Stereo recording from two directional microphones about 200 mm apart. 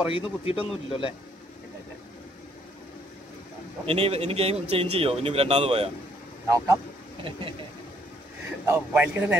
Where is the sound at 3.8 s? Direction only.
30° right (ahead or behind).